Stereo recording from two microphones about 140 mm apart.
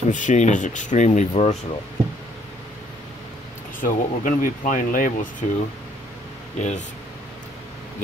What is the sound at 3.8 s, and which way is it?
Speech, 75° left (ahead or behind).